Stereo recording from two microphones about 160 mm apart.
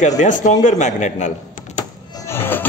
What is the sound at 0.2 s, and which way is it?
A man's voice, 50° left (ahead or behind).